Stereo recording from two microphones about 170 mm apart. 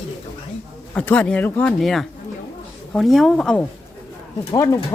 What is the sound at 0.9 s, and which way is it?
Speech, 10° left (ahead or behind).